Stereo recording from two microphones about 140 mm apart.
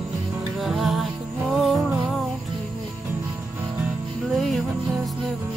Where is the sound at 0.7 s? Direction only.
5° right (ahead or behind).